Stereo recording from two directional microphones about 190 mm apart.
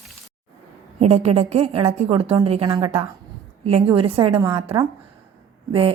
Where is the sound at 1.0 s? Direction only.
35° right (ahead or behind).